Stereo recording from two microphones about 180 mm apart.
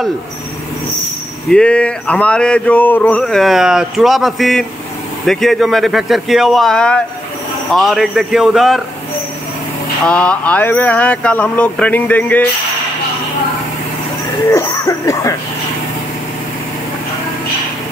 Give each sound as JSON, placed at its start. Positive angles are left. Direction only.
{"t": 1.5, "sound": "a sound", "side_deg": 5}
{"t": 10.0, "sound": "speech", "side_deg": 5}
{"t": 14.5, "sound": "speech", "side_deg": 15}